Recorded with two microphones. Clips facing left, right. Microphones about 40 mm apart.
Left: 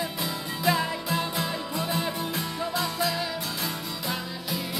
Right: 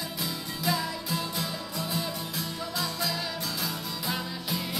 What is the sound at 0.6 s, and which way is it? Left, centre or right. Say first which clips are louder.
Music: left 5 dB; left.